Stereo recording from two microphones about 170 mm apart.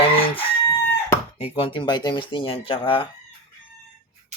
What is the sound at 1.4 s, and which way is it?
Speech, 30° left (ahead or behind).